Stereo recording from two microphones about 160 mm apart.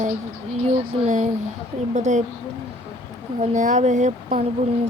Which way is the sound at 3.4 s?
50° right (ahead or behind).